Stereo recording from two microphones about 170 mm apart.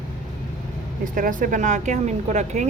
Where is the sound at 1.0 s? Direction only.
50° right (ahead or behind).